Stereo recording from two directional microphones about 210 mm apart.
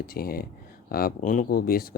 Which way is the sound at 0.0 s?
45° left (ahead or behind).